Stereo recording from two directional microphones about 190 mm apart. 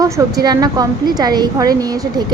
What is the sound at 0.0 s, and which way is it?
A woman's voice, 15° right (ahead or behind).